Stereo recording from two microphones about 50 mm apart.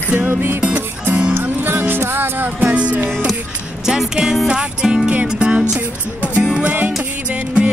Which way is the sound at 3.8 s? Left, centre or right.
Centre.